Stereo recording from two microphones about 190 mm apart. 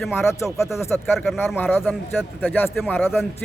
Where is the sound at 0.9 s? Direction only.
Centre (ahead or behind).